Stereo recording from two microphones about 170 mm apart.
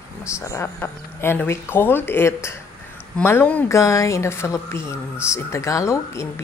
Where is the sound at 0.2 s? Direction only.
15° left (ahead or behind).